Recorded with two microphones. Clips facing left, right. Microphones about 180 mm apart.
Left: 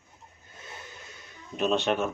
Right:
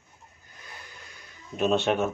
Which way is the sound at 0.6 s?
25° left (ahead or behind).